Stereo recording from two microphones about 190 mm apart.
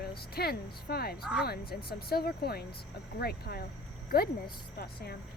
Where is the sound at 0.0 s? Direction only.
55° left (ahead or behind).